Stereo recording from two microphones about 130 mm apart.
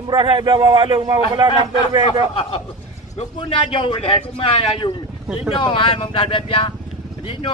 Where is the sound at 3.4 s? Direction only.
40° left (ahead or behind).